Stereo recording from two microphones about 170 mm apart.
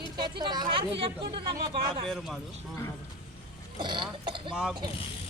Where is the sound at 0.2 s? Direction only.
25° right (ahead or behind).